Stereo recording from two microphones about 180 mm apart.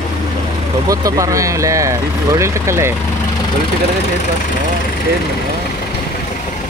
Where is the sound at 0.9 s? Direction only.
20° right (ahead or behind).